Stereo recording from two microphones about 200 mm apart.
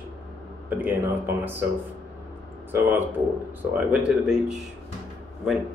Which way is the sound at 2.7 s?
10° right (ahead or behind).